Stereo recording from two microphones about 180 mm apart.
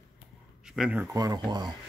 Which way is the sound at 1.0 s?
20° right (ahead or behind).